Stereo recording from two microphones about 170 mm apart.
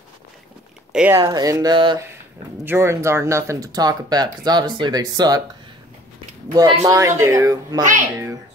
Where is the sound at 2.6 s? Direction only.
15° right (ahead or behind).